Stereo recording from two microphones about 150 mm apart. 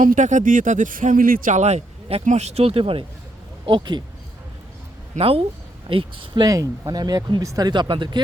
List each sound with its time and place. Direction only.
0.0 s speech: 60° right (ahead or behind); by 4.0 s 30° right (ahead or behind)
5.1 s speech: 40° right (ahead or behind)